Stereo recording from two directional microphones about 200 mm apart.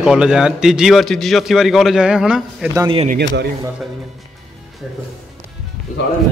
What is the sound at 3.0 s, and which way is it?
Speech, 50° right (ahead or behind).